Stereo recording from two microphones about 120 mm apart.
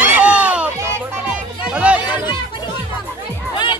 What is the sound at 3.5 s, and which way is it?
Music, 40° left (ahead or behind).